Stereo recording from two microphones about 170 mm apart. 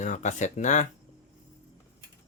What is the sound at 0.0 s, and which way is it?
Speech, 45° left (ahead or behind).